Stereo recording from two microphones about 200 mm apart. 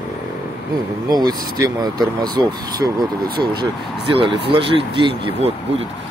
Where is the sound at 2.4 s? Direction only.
20° right (ahead or behind).